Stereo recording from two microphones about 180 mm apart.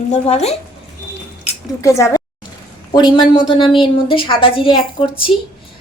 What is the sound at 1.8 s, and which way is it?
A woman's voice, 15° left (ahead or behind).